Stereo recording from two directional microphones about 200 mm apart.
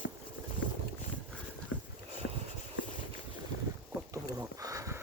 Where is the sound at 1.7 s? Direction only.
80° left.